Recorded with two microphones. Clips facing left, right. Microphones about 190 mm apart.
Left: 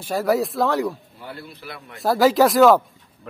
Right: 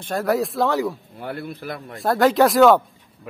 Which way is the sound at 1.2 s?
55° right (ahead or behind).